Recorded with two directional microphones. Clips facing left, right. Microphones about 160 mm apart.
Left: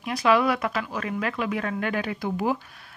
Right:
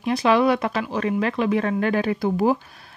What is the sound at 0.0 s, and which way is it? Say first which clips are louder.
Speech: right 3 dB; 25° right (ahead or behind).